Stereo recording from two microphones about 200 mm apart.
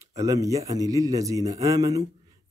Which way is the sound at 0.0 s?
15° right (ahead or behind).